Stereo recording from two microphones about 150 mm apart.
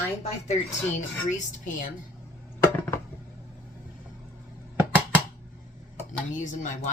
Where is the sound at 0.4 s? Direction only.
50° left (ahead or behind).